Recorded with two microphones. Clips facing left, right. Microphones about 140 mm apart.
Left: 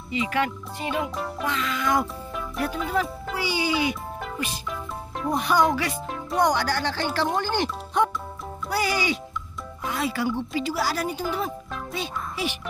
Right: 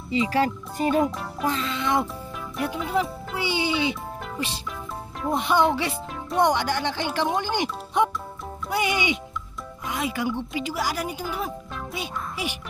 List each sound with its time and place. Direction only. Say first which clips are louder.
0.1 s speech: right 3 dB; 30° right (ahead or behind)
1.4 s music: right 2 dB; 35° right (ahead or behind)
2.9 s a child's voice: right 2 dB; 20° right (ahead or behind)
4.6 s music: left 1 dB; centre (ahead or behind)
5.3 s speech: even; 25° right (ahead or behind)
6.0 s music: right 2 dB; centre (ahead or behind)
6.4 s a woman's voice: right 1 dB; 20° right (ahead or behind)